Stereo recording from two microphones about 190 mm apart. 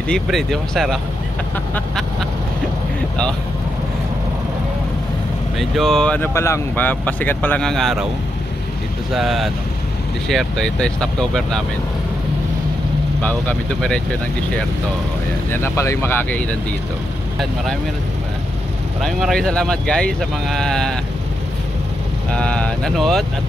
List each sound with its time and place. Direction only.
0.1 s speech: centre (ahead or behind)
5.6 s speech: centre (ahead or behind)
9.1 s speech: centre (ahead or behind)
13.2 s speech: 10° left (ahead or behind)
15.5 s speech: 15° left (ahead or behind)
18.9 s speech: centre (ahead or behind)
22.3 s speech: 5° left (ahead or behind)